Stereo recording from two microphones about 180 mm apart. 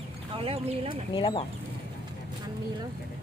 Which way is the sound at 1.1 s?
30° left (ahead or behind).